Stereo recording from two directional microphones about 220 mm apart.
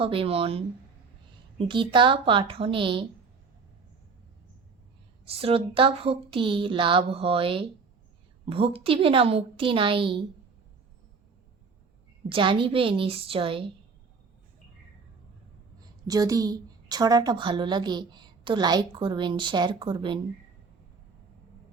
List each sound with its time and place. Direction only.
0.0 s a woman's voice: 25° right (ahead or behind)
5.2 s a woman's voice: 25° right (ahead or behind)
12.3 s a woman's voice: 25° right (ahead or behind)
16.0 s a woman's voice: 15° right (ahead or behind)